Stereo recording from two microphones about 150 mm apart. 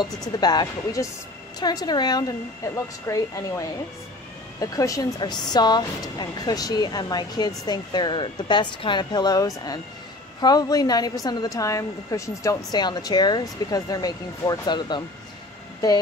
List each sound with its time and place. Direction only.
0.4 s a woman's voice: 25° left (ahead or behind)